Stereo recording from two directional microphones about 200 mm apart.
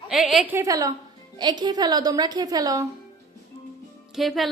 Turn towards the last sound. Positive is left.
turn(degrees=0)  # may be behind; listen again after turning